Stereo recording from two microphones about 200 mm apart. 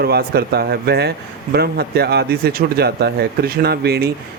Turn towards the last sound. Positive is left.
turn(degrees=-50)  # may be behind; listen again after turning